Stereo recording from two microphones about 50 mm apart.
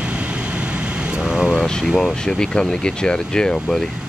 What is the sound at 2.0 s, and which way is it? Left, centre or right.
Speech, centre.